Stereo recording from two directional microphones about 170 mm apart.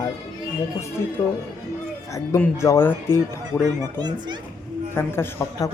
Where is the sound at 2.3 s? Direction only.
15° left (ahead or behind).